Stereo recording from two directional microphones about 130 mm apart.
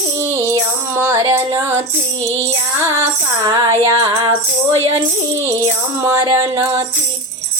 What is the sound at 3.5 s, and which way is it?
Music, 25° right (ahead or behind).